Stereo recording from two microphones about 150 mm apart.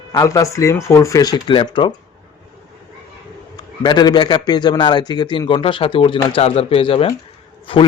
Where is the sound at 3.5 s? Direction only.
30° left (ahead or behind).